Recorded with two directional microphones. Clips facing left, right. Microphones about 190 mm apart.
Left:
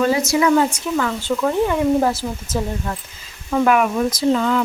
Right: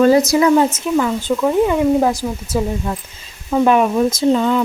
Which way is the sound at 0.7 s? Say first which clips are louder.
Right 4 dB; 20° right (ahead or behind).